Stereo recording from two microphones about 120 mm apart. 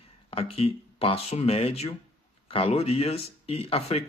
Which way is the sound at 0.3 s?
55° left (ahead or behind).